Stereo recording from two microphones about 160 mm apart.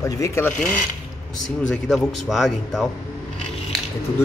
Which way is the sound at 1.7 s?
5° left (ahead or behind).